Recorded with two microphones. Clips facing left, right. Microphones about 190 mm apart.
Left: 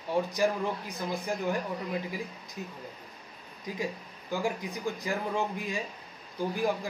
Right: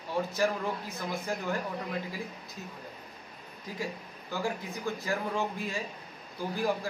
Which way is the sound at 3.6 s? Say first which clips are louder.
Left 3 dB; 15° left (ahead or behind).